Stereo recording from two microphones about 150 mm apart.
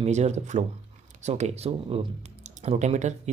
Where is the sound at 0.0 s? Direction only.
50° right (ahead or behind).